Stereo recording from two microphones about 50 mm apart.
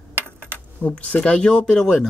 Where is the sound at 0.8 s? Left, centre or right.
Left.